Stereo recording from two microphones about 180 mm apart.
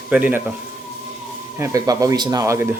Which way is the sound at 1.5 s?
15° right (ahead or behind).